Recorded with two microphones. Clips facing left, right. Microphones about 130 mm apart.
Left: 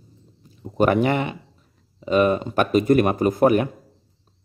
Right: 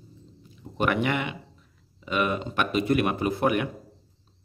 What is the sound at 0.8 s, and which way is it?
Speech, 40° left (ahead or behind).